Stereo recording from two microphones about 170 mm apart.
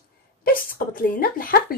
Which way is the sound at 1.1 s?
55° left (ahead or behind).